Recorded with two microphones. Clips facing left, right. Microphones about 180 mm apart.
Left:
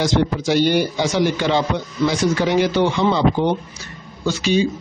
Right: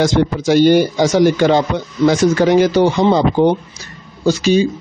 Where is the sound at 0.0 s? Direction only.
50° right (ahead or behind).